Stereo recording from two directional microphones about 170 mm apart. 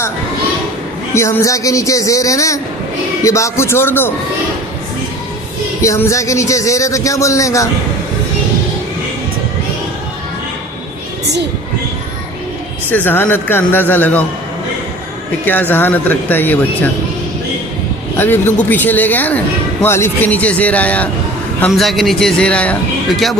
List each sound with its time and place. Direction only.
1.1 s a man's voice: 15° left (ahead or behind)
5.8 s a man's voice: 15° left (ahead or behind)
12.9 s speech: 10° left (ahead or behind)
15.7 s speech: 10° left (ahead or behind)
18.2 s a man's voice: 10° left (ahead or behind)